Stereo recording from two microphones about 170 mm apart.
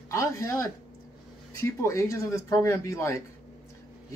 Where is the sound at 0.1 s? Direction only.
20° left (ahead or behind).